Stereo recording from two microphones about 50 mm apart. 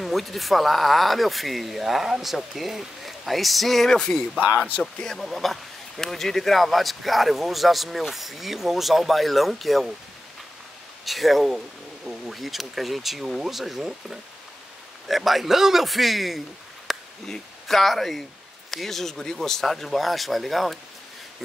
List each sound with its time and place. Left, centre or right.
0.0 s speech: centre
5.1 s speech: centre
11.1 s speech: centre